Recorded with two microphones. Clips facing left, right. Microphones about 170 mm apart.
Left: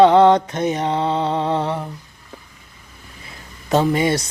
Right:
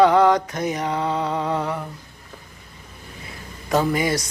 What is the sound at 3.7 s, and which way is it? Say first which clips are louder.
Speech: left 3 dB; 25° left (ahead or behind).